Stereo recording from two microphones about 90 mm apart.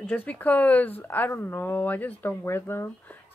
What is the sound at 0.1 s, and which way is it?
Speech, 15° left (ahead or behind).